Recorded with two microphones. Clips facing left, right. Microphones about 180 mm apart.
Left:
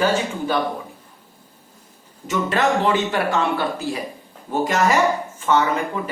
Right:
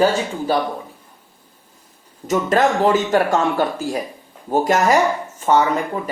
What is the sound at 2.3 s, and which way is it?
Speech, 40° right (ahead or behind).